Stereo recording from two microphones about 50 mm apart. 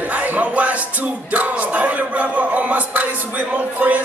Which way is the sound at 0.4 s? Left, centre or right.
Right.